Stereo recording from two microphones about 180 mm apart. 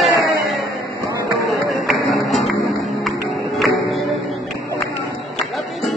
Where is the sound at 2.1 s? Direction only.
Centre (ahead or behind).